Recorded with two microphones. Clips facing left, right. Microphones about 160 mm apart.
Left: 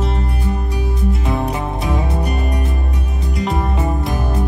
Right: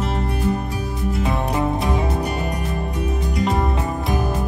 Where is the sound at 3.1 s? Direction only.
Centre (ahead or behind).